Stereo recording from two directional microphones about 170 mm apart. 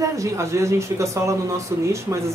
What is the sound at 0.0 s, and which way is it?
Speech, 15° right (ahead or behind).